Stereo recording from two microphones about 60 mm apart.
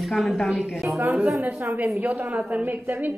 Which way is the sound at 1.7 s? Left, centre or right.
Right.